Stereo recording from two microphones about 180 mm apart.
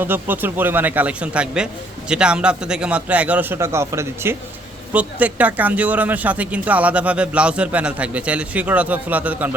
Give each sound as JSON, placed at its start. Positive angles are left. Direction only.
{"t": 0.0, "sound": "speech", "side_deg": -10}